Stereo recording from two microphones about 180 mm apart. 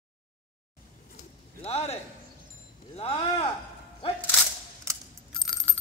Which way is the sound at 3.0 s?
30° left (ahead or behind).